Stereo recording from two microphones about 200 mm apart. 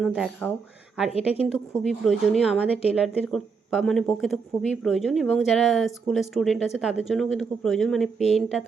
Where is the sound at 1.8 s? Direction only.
Centre (ahead or behind).